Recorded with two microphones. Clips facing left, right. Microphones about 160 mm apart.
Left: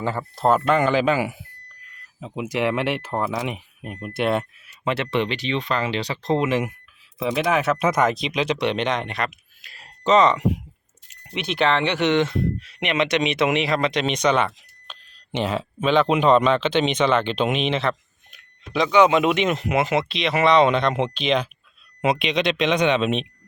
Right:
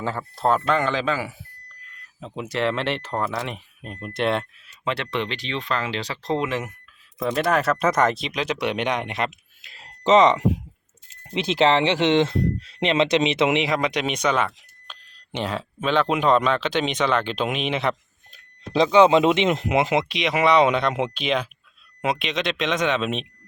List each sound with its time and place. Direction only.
0.0 s speech: centre (ahead or behind)
18.3 s speech: 30° right (ahead or behind); by 23.3 s centre (ahead or behind)